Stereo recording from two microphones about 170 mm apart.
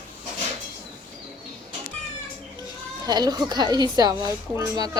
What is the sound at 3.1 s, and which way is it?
A woman's voice, 25° right (ahead or behind).